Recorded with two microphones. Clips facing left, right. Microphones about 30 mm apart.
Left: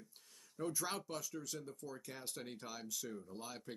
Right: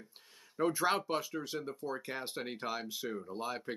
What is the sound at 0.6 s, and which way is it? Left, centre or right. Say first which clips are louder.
Speech: right 11 dB; right.